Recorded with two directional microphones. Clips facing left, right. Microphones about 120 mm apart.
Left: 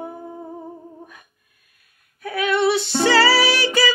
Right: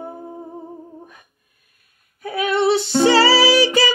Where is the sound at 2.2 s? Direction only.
25° right (ahead or behind).